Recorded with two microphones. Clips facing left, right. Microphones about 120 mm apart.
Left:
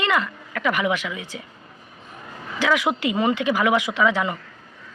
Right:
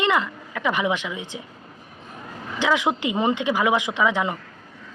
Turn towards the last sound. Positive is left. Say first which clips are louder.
# left 1 dB
turn(degrees=-15)  # may be behind; listen again after turning